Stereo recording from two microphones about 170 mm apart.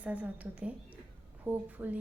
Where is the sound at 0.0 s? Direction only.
10° right (ahead or behind).